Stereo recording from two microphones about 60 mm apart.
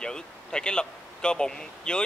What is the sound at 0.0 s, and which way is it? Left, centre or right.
Speech, centre.